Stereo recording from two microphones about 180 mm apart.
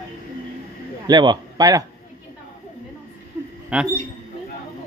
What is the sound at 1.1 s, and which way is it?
Speech, 20° right (ahead or behind).